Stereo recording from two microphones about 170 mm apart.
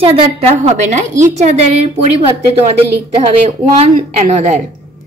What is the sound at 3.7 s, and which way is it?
Speech, 45° right (ahead or behind).